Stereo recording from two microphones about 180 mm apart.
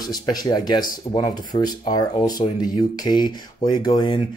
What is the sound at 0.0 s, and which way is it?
Speech, 20° left (ahead or behind).